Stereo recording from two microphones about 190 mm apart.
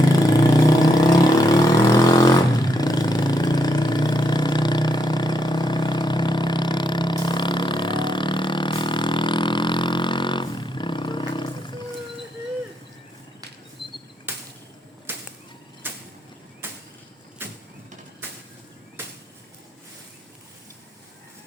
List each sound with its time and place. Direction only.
0.3 s vehicle: 20° left (ahead or behind)
14.3 s a sound: 10° right (ahead or behind)
15.1 s whip: 10° right (ahead or behind)
15.8 s creak: 10° right (ahead or behind)
16.6 s a sound: 10° right (ahead or behind)
17.4 s vehicle: 10° right (ahead or behind)